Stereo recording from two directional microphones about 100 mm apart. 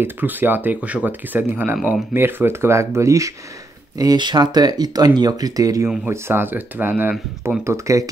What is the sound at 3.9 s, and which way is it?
Speech, 45° right (ahead or behind).